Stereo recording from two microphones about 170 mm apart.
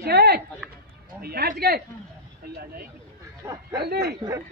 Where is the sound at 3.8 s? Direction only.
75° right (ahead or behind).